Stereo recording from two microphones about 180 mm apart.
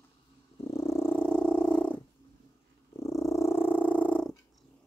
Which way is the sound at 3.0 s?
15° left (ahead or behind).